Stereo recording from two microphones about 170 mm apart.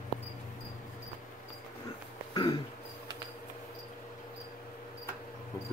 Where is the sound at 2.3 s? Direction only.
25° left (ahead or behind).